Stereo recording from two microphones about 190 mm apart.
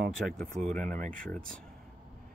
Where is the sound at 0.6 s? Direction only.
5° left (ahead or behind).